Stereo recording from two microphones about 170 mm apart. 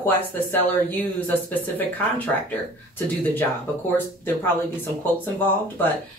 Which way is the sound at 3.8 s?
10° left (ahead or behind).